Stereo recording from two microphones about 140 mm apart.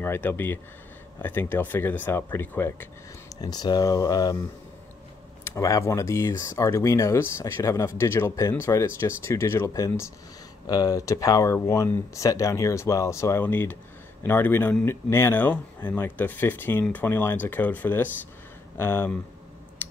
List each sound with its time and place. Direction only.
0.0 s speech: 15° left (ahead or behind)
3.3 s speech: 30° left (ahead or behind)
19.8 s tick-tock: 15° left (ahead or behind)